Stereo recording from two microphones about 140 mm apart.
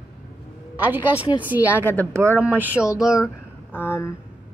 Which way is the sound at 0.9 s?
15° right (ahead or behind).